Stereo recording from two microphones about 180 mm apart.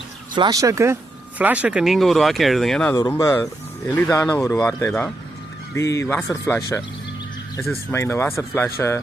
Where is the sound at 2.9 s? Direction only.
20° left (ahead or behind).